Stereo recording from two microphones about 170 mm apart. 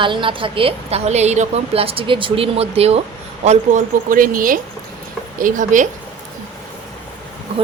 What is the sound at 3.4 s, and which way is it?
Speech, 50° right (ahead or behind).